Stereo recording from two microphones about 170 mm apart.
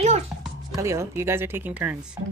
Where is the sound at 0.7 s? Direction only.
15° right (ahead or behind).